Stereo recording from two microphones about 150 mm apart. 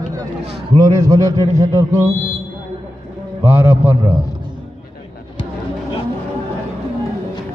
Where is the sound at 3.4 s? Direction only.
10° right (ahead or behind).